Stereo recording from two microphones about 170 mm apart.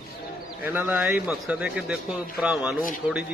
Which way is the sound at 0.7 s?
10° right (ahead or behind).